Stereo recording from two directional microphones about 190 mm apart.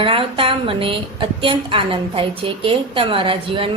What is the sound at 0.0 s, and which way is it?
A woman's voice, 30° right (ahead or behind).